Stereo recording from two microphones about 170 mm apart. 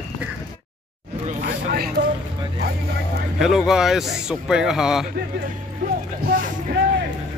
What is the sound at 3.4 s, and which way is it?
Speech, centre (ahead or behind).